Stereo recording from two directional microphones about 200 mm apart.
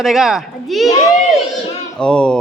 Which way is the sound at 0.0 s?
Centre (ahead or behind).